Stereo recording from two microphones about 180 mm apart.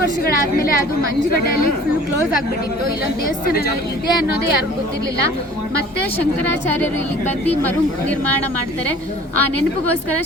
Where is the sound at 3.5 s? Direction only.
60° left (ahead or behind).